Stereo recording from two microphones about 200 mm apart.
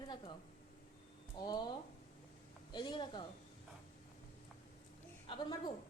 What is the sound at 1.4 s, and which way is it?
A woman's voice, 20° left (ahead or behind).